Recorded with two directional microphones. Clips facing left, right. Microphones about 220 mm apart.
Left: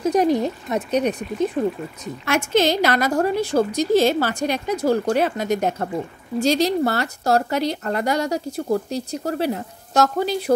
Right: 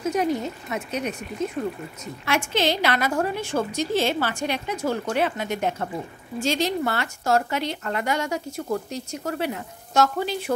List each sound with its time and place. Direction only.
0.0 s speech: 35° left (ahead or behind)
2.2 s speech: 45° left (ahead or behind)